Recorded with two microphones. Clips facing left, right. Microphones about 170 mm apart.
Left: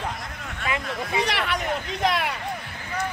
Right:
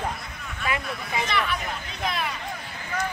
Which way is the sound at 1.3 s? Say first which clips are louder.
Left 2 dB; 80° left.